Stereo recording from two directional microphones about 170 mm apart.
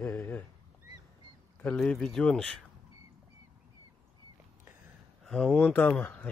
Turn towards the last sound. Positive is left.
turn(degrees=10)  # may be behind; listen again after turning